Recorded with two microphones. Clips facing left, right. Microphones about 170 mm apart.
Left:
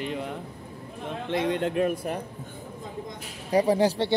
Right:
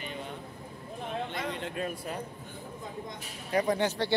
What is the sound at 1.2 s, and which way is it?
Speech, 65° left (ahead or behind).